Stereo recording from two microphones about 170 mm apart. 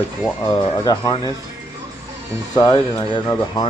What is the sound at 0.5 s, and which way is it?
Speech, 25° left (ahead or behind).